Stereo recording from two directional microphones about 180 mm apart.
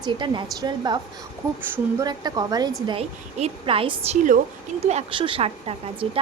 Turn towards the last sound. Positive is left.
turn(degrees=-30)  # may be behind; listen again after turning